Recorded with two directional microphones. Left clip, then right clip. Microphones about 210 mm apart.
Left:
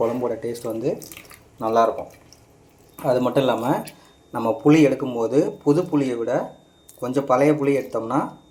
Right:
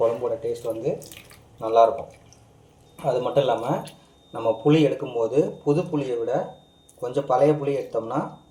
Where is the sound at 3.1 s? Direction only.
40° left (ahead or behind).